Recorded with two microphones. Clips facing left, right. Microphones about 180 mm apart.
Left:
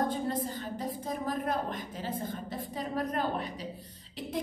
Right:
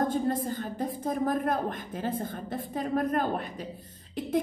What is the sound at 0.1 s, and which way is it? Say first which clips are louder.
A woman's voice: right 4 dB; 50° right (ahead or behind).